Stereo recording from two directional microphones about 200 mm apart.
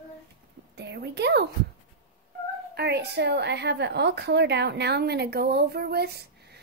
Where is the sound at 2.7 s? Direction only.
55° right (ahead or behind).